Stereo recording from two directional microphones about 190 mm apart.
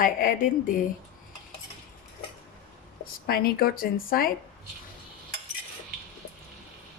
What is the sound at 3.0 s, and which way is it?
Speech, 50° left (ahead or behind).